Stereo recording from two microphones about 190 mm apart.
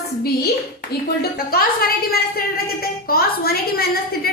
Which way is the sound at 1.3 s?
50° left (ahead or behind).